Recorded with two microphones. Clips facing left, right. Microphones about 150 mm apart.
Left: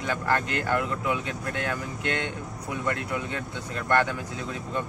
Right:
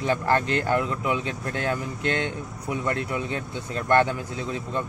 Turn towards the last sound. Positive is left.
turn(degrees=-30)  # may be behind; listen again after turning